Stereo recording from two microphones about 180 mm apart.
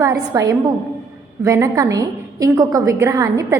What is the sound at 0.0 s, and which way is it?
A woman's voice, 20° right (ahead or behind).